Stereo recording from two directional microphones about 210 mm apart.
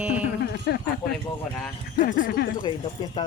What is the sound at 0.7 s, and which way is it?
Speech, 50° left (ahead or behind).